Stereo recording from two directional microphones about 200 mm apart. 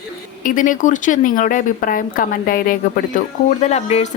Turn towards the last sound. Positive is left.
turn(degrees=35)  # may be behind; listen again after turning